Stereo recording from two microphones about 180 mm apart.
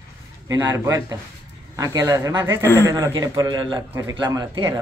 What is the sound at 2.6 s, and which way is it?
Speech, 15° left (ahead or behind).